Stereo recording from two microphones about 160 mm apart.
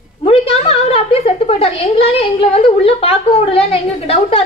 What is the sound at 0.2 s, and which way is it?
A woman's voice, 40° left (ahead or behind).